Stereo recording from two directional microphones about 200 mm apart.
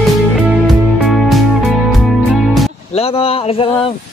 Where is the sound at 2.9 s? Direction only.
30° left (ahead or behind).